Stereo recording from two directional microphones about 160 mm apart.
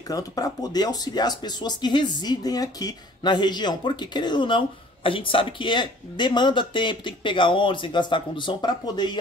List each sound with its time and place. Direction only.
0.1 s speech: 25° left (ahead or behind)